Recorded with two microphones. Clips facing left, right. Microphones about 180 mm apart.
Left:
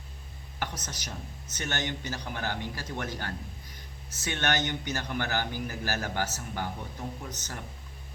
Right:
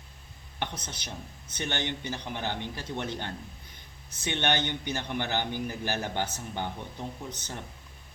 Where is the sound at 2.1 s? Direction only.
20° right (ahead or behind).